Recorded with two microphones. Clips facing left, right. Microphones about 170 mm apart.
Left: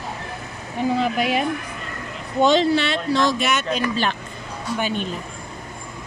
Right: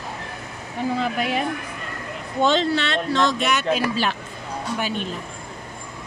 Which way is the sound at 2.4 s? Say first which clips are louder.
Left 3 dB; 15° left (ahead or behind).